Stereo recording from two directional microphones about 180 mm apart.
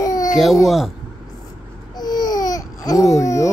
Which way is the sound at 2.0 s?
20° left (ahead or behind).